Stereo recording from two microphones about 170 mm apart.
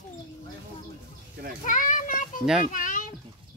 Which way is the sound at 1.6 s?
50° left (ahead or behind).